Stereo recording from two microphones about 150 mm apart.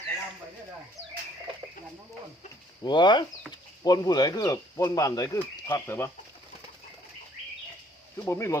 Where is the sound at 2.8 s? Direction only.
30° left (ahead or behind).